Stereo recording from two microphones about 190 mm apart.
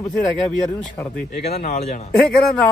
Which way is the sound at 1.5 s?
35° left (ahead or behind).